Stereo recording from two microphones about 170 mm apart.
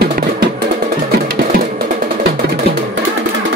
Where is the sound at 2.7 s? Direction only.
70° right (ahead or behind).